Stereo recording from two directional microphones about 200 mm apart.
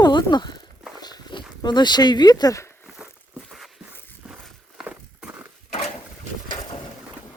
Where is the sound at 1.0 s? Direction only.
20° left (ahead or behind).